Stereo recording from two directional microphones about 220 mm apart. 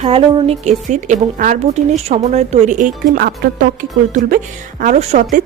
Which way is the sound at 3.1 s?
45° right (ahead or behind).